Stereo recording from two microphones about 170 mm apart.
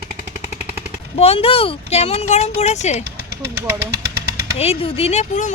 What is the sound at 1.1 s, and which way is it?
Speech, 35° left (ahead or behind).